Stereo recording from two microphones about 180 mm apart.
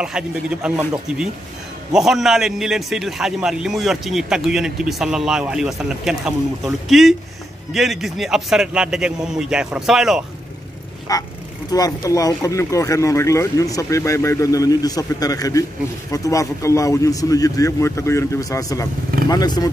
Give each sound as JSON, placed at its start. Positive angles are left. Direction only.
{"t": 0.0, "sound": "a man's voice", "side_deg": -5}
{"t": 11.1, "sound": "speech", "side_deg": 20}